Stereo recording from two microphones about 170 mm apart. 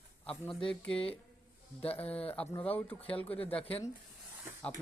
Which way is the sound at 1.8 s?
35° left (ahead or behind).